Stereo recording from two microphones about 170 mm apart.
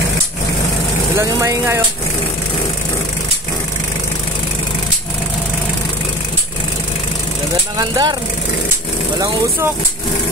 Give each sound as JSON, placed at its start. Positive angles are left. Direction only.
{"t": 1.1, "sound": "speech", "side_deg": -15}
{"t": 7.7, "sound": "speech", "side_deg": -25}